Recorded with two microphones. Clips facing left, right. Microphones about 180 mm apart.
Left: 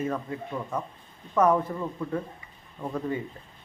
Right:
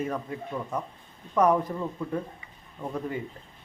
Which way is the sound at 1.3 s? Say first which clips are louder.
Even; 10° right (ahead or behind).